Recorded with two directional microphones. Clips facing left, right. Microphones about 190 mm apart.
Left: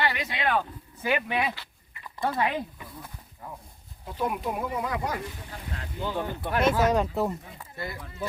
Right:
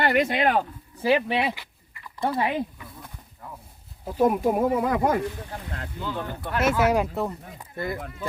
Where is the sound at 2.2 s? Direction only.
20° right (ahead or behind).